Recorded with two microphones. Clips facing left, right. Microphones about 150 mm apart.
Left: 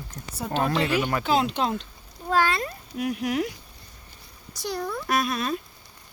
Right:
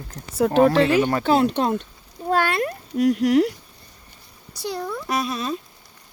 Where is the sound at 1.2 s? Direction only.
65° right (ahead or behind); by 3.3 s 80° right.